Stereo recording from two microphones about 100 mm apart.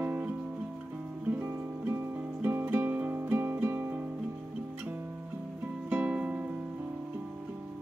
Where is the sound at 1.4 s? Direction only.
25° right (ahead or behind).